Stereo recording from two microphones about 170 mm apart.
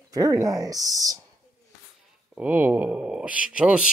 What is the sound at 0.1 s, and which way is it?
Speech, 20° right (ahead or behind).